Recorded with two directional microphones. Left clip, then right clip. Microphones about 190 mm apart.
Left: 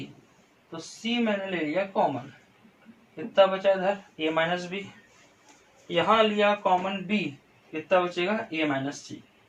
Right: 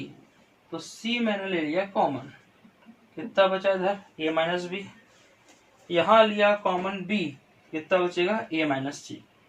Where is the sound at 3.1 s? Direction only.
15° left (ahead or behind).